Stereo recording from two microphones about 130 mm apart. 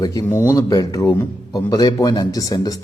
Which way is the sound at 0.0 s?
30° left (ahead or behind).